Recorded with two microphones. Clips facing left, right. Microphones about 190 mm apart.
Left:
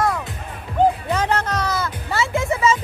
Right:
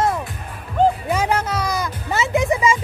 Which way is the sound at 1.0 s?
10° right (ahead or behind).